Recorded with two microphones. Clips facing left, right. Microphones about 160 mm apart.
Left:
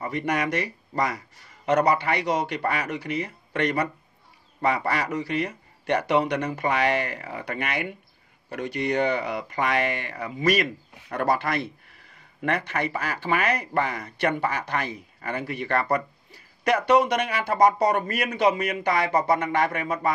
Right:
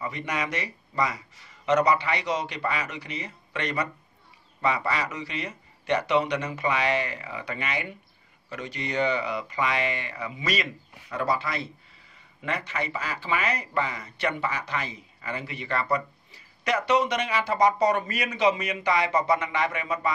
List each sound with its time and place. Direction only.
0.0 s speech: 55° left (ahead or behind)